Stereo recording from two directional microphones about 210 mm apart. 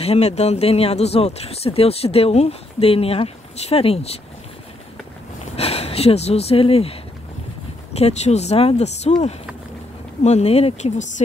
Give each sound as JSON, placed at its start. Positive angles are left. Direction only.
{"t": 0.0, "sound": "speech", "side_deg": 30}
{"t": 5.6, "sound": "speech", "side_deg": 30}